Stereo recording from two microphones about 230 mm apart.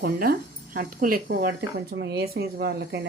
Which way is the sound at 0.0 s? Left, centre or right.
Right.